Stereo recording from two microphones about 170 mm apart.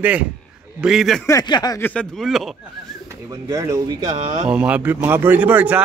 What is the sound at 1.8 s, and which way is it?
Speech, 5° left (ahead or behind).